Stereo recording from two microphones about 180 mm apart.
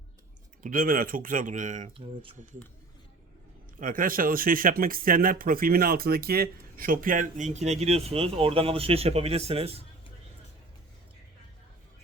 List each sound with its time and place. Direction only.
0.6 s speech: 50° right (ahead or behind)
3.8 s speech: 50° right (ahead or behind); by 9.8 s 35° right (ahead or behind)